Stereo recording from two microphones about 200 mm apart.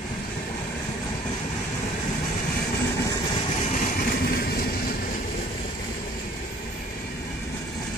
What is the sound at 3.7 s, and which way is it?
Train, 45° left (ahead or behind).